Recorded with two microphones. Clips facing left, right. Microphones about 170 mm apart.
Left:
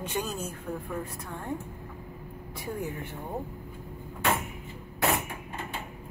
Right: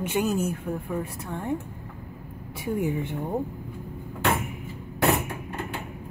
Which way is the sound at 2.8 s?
15° right (ahead or behind).